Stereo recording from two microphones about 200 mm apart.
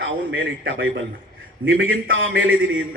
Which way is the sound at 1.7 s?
75° right (ahead or behind).